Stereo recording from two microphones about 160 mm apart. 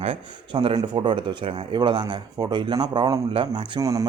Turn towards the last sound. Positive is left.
turn(degrees=-20)  # may be behind; listen again after turning